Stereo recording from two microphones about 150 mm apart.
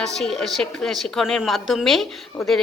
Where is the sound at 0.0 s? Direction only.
5° left (ahead or behind).